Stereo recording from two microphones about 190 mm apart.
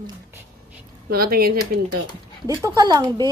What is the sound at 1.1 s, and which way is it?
Speech, 50° right (ahead or behind).